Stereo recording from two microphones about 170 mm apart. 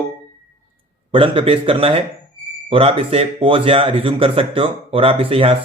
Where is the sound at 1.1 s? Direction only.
30° right (ahead or behind).